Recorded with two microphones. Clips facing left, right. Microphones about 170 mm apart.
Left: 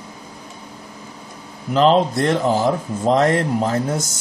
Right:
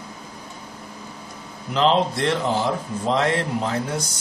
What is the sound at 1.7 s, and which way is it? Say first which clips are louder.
Speech: left 4 dB; 40° left (ahead or behind).